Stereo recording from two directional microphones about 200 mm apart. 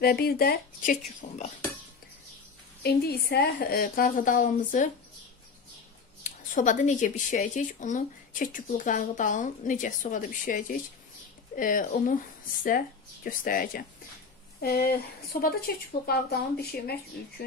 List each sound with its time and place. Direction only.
0.0 s a woman's voice: 50° left (ahead or behind)
2.8 s a woman's voice: 50° left (ahead or behind)
6.5 s a woman's voice: 40° left (ahead or behind)